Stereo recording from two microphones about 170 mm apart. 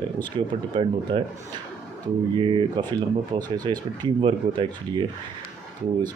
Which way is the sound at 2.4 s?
30° right (ahead or behind).